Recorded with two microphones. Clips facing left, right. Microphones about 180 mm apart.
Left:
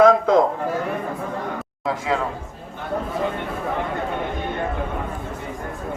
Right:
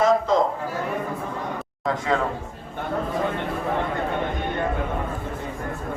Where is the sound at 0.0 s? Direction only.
55° left (ahead or behind).